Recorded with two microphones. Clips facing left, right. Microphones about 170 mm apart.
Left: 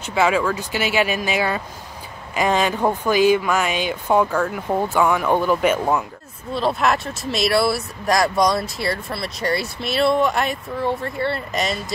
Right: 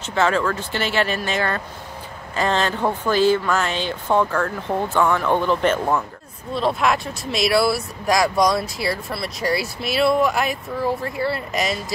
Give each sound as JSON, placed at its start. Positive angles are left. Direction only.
{"t": 0.0, "sound": "speech", "side_deg": 10}